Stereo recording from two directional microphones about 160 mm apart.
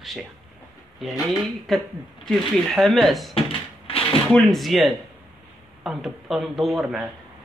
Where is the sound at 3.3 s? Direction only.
35° left (ahead or behind).